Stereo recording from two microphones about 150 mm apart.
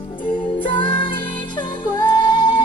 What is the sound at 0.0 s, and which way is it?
Music, 35° left (ahead or behind).